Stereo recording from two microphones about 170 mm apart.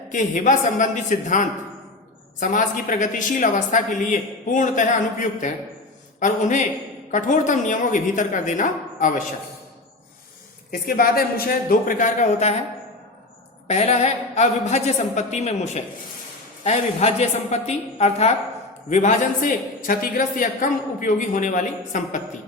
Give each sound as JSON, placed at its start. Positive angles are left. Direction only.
{"t": 0.1, "sound": "a woman's voice", "side_deg": 50}
{"t": 6.1, "sound": "a woman's voice", "side_deg": 50}
{"t": 10.7, "sound": "a man's voice", "side_deg": 60}
{"t": 13.7, "sound": "a woman's voice", "side_deg": 40}